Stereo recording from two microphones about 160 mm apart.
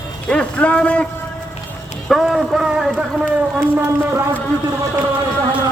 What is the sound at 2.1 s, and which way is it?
Speech, centre (ahead or behind).